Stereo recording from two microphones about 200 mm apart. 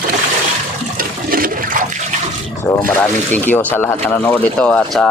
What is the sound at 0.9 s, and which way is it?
Toilet flush, 45° right (ahead or behind).